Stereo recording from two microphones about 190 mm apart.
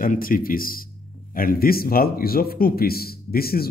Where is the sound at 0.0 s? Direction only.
45° left (ahead or behind).